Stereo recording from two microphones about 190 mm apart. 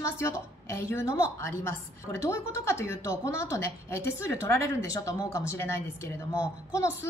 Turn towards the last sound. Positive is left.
turn(degrees=15)  # may be behind; listen again after turning